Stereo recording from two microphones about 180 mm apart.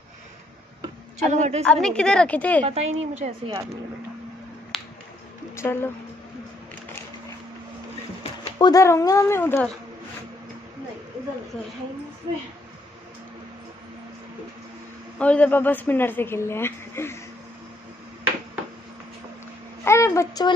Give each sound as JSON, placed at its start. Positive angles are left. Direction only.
{"t": 1.3, "sound": "a woman's voice", "side_deg": -40}
{"t": 1.6, "sound": "a woman's voice", "side_deg": 5}
{"t": 2.6, "sound": "a woman's voice", "side_deg": -35}
{"t": 4.7, "sound": "finger snapping", "side_deg": 0}
{"t": 5.6, "sound": "a man's voice", "side_deg": 15}
{"t": 8.2, "sound": "speech", "side_deg": 25}
{"t": 15.1, "sound": "a man's voice", "side_deg": 5}
{"t": 19.8, "sound": "a sound", "side_deg": 15}